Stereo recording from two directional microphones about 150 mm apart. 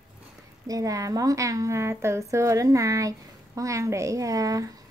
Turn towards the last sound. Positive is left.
turn(degrees=-25)  # may be behind; listen again after turning